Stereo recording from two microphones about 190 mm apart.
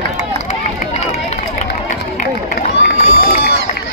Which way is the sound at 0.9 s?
35° left (ahead or behind).